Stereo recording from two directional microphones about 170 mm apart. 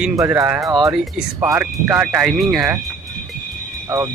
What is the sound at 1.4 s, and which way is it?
Speech, 15° right (ahead or behind).